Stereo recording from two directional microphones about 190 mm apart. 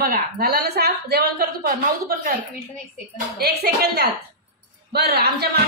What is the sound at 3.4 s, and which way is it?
Speech, 55° right (ahead or behind).